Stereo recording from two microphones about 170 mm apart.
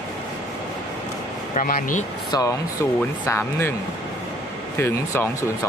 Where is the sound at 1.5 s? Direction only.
50° left (ahead or behind).